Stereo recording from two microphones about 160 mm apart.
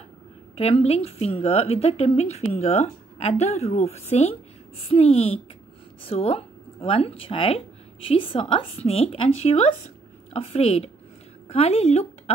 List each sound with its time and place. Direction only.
0.6 s a woman's voice: 40° left (ahead or behind)